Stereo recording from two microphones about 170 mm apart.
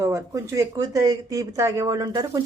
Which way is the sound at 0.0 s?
15° right (ahead or behind).